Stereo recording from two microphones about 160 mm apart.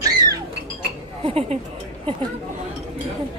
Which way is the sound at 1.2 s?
40° right (ahead or behind).